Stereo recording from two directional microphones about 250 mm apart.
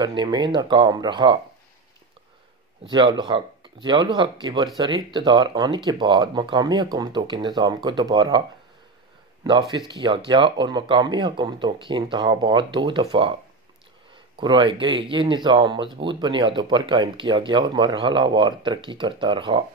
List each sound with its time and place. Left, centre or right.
0.0 s speech: centre
2.8 s speech: centre
14.4 s speech: centre